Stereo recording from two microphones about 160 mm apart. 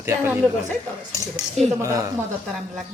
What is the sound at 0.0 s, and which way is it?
Speech, 15° right (ahead or behind).